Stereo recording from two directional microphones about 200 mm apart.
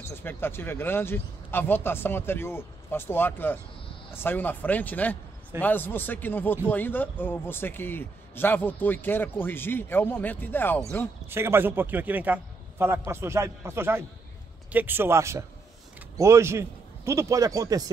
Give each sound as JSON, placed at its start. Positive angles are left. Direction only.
{"t": 0.1, "sound": "speech", "side_deg": 10}
{"t": 11.2, "sound": "a man's voice", "side_deg": -10}